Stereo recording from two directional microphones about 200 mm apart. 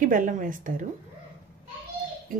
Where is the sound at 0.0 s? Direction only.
40° right (ahead or behind).